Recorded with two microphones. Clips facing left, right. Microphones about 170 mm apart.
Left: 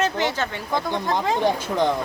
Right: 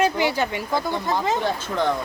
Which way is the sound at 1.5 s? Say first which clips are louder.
Left 3 dB; 15° left (ahead or behind).